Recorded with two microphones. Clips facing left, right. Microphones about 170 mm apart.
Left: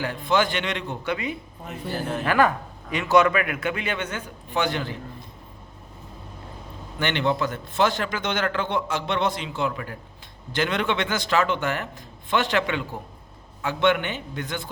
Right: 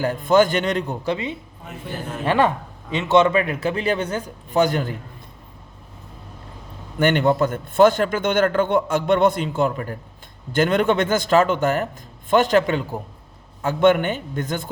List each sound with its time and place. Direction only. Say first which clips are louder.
0.0 s a man's voice: right 6 dB; 45° right (ahead or behind)
1.1 s a man's voice: right 2 dB; 25° right (ahead or behind); by 4.9 s 45° right (ahead or behind)
7.0 s a man's voice: right 6 dB; 50° right (ahead or behind)